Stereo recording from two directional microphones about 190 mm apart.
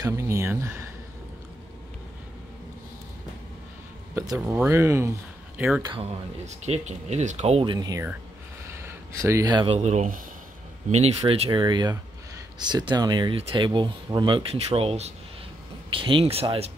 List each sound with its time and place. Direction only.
0.0 s speech: 15° right (ahead or behind)
4.1 s speech: 15° right (ahead or behind)
5.8 s speech: 25° right (ahead or behind)
6.4 s speech: 35° right (ahead or behind)
9.8 s speech: 40° right (ahead or behind)